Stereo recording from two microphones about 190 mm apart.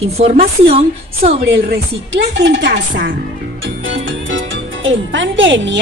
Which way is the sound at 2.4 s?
65° right (ahead or behind).